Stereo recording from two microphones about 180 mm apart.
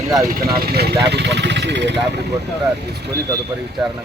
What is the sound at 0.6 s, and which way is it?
Speech, 60° right (ahead or behind).